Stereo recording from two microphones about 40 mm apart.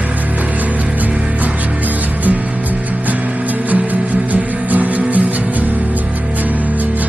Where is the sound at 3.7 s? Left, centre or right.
Right.